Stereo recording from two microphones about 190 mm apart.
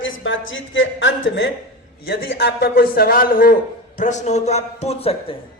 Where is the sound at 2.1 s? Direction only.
55° left (ahead or behind); by 5.1 s 30° left (ahead or behind).